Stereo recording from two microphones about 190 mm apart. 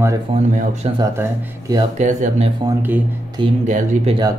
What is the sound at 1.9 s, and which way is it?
Speech, 40° right (ahead or behind).